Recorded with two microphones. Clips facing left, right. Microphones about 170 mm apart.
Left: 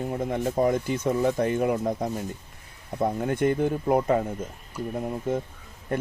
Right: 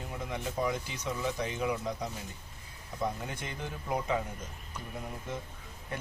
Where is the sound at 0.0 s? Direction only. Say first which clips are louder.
Left 10 dB; 50° left (ahead or behind).